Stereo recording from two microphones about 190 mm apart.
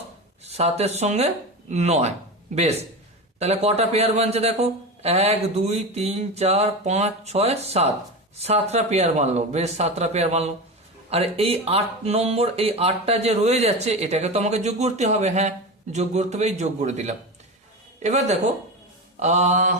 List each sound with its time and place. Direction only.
0.4 s speech: 35° right (ahead or behind)
3.3 s speech: 35° right (ahead or behind)